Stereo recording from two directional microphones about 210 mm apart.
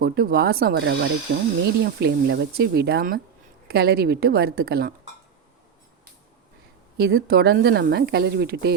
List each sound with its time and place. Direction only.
0.0 s speech: 45° right (ahead or behind)
6.9 s speech: 50° right (ahead or behind)